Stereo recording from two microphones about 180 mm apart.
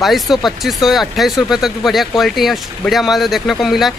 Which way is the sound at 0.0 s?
Centre (ahead or behind).